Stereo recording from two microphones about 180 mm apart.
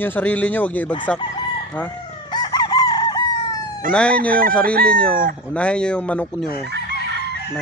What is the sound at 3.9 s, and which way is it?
Speech, 5° left (ahead or behind).